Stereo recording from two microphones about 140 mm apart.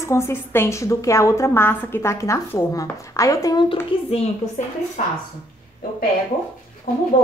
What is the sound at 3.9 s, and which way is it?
Speech, 40° left (ahead or behind).